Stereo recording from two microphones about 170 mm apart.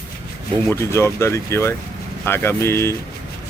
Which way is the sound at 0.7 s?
15° left (ahead or behind).